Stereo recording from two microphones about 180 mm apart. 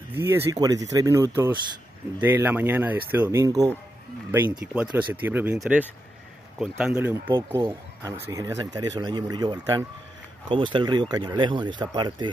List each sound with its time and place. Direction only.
0.1 s speech: 10° right (ahead or behind)
7.3 s speech: 20° right (ahead or behind)